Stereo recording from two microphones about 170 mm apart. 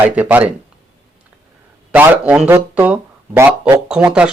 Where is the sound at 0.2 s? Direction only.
10° right (ahead or behind).